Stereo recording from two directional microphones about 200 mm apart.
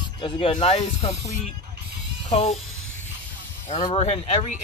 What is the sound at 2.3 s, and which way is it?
Speech, 30° left (ahead or behind).